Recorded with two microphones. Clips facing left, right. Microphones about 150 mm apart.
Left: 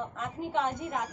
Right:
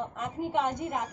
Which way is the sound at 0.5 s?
15° right (ahead or behind).